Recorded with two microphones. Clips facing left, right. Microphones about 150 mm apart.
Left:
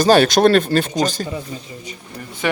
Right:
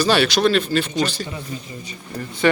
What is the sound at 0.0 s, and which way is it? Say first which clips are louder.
Speech: left 5 dB; 45° left (ahead or behind).